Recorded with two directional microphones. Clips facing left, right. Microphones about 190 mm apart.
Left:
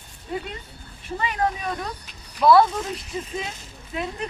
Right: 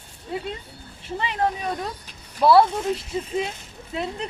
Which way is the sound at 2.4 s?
30° right (ahead or behind).